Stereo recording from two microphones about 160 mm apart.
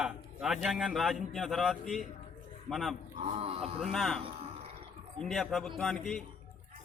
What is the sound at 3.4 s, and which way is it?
Speech, 40° right (ahead or behind).